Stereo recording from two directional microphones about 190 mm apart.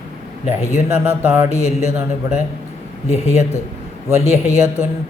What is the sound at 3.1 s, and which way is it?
Speech, 35° left (ahead or behind).